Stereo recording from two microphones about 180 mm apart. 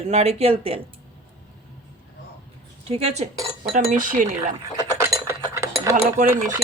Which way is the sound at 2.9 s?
35° right (ahead or behind).